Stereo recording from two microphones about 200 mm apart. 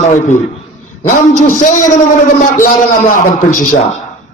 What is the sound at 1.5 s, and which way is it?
Speech, 40° left (ahead or behind).